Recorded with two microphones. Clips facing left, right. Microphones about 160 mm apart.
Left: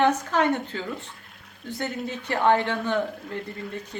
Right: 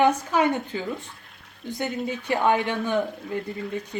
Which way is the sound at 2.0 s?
10° right (ahead or behind).